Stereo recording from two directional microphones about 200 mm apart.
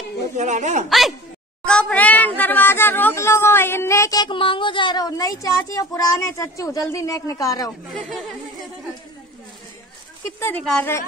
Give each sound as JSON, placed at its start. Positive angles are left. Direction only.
{"t": 0.4, "sound": "speech", "side_deg": -35}
{"t": 0.8, "sound": "speech", "side_deg": 0}
{"t": 7.9, "sound": "speech", "side_deg": 0}
{"t": 10.4, "sound": "a woman's voice", "side_deg": 5}